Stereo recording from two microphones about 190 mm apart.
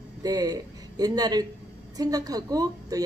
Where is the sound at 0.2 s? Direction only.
20° right (ahead or behind).